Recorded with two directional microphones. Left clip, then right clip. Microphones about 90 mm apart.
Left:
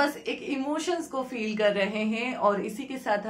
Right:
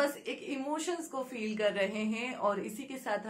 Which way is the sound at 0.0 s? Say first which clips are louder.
Left 6 dB; 30° left (ahead or behind).